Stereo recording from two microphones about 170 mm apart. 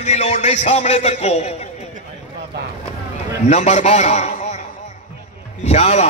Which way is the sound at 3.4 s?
40° left (ahead or behind).